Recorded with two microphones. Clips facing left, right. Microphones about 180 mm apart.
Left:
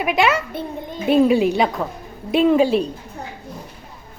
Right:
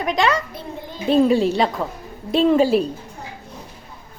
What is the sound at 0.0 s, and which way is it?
A child's voice, 10° left (ahead or behind).